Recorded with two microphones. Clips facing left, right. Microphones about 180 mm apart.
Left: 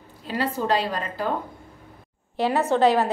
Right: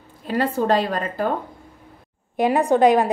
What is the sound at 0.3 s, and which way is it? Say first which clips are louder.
A woman's voice: right 4 dB; 50° right (ahead or behind).